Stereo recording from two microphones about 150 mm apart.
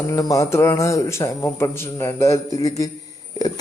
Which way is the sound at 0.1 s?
20° left (ahead or behind).